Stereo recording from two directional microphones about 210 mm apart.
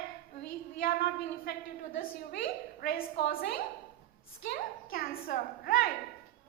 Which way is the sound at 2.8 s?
45° left (ahead or behind).